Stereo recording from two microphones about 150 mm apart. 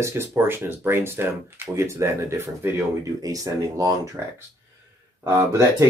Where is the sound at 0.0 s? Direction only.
20° right (ahead or behind).